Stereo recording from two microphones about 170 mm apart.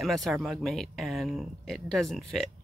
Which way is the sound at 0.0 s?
Centre (ahead or behind).